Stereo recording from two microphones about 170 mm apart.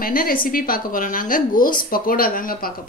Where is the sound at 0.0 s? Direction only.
60° left (ahead or behind).